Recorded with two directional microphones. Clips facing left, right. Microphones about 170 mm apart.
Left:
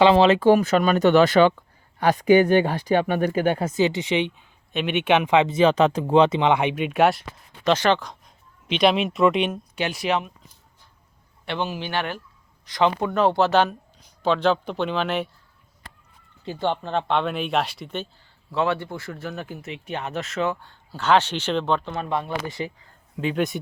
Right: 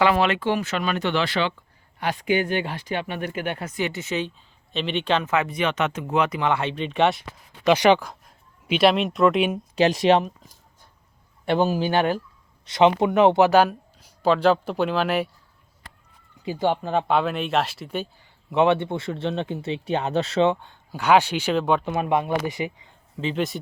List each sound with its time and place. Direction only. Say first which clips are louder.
0.0 s speech: left 5 dB; 25° left (ahead or behind)
0.4 s speech: left 7 dB; 40° left (ahead or behind)
3.6 s speech: left 6 dB; 25° left (ahead or behind); by 7.2 s 5° left (ahead or behind)
7.6 s speech: right 3 dB; 15° right (ahead or behind)
9.7 s speech: right 8 dB; 35° right (ahead or behind)
12.6 s speech: right 4 dB; 20° right (ahead or behind)
16.4 s speech: right 2 dB; 10° right (ahead or behind)
18.5 s speech: right 5 dB; 20° right (ahead or behind)
23.3 s speech: left 1 dB; centre (ahead or behind)